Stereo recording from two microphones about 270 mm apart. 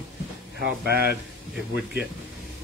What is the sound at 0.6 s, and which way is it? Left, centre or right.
Speech, right.